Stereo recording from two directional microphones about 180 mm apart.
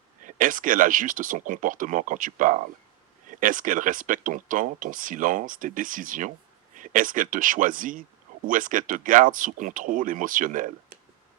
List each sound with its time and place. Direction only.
0.3 s speech: 50° right (ahead or behind)